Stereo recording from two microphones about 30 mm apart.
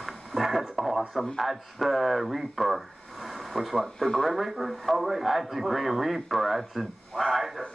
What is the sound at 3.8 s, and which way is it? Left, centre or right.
Speech, centre.